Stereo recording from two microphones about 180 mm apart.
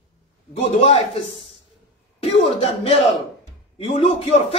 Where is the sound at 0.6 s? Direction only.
35° left (ahead or behind).